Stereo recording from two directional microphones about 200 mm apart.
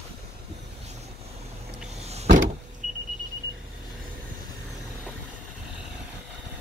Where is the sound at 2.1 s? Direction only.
35° right (ahead or behind).